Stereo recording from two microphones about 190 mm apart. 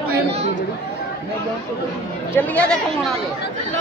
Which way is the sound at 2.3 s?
10° left (ahead or behind).